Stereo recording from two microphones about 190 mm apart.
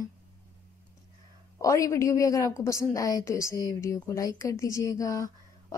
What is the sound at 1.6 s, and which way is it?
A woman's voice, 15° left (ahead or behind).